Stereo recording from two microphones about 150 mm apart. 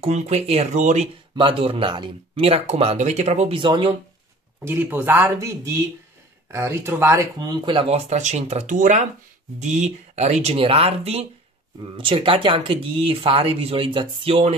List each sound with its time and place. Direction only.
0.0 s speech: 50° right (ahead or behind)
1.3 s speech: 35° right (ahead or behind)
4.6 s speech: 15° right (ahead or behind); by 7.8 s 30° right (ahead or behind)
7.9 s speech: 50° right (ahead or behind)